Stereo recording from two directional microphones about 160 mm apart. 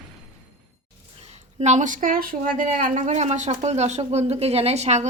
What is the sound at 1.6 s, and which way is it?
Speech, 50° right (ahead or behind).